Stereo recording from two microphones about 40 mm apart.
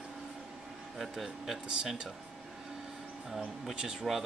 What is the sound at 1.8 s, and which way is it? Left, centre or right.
Speech, centre.